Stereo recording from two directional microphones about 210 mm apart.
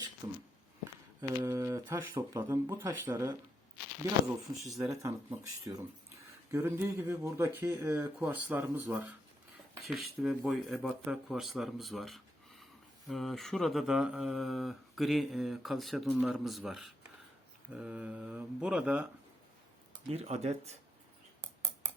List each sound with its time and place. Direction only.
0.2 s speech: 20° right (ahead or behind)
4.8 s speech: 15° right (ahead or behind)
20.1 s speech: 30° right (ahead or behind)